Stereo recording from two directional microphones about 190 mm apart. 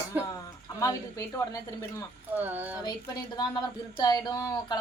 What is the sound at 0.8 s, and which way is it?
Speech, 15° left (ahead or behind).